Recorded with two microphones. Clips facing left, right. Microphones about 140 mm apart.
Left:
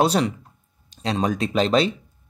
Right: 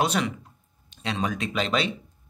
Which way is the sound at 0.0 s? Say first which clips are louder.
Left 5 dB; 35° left (ahead or behind).